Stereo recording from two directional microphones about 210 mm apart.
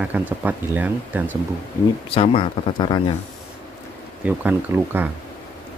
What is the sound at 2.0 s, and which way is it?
Speech, 25° left (ahead or behind).